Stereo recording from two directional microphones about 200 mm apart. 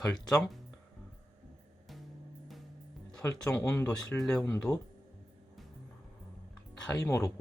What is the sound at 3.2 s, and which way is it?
Speech, 5° left (ahead or behind).